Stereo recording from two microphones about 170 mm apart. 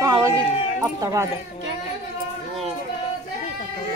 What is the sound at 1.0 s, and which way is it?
Speech, 20° right (ahead or behind).